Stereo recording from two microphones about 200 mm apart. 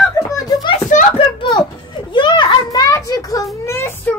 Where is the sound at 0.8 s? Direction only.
40° left (ahead or behind).